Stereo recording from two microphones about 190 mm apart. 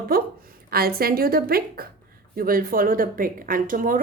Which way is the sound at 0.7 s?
50° right (ahead or behind).